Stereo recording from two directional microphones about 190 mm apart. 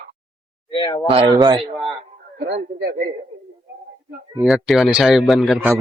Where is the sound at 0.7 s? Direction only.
25° left (ahead or behind).